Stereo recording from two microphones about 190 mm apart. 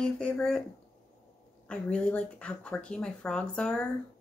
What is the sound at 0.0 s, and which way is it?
Speech, 5° left (ahead or behind).